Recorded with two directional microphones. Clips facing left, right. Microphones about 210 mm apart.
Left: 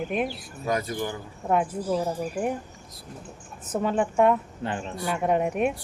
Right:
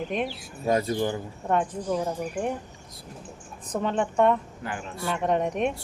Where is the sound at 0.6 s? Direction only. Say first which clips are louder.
Right 4 dB; 25° right (ahead or behind).